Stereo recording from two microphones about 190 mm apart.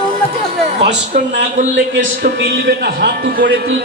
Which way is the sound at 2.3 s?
55° right (ahead or behind).